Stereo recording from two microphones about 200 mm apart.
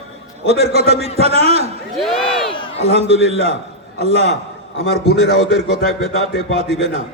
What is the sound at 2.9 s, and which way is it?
A man's voice, 30° right (ahead or behind).